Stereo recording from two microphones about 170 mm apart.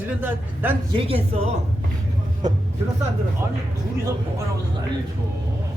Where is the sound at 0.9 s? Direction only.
35° right (ahead or behind).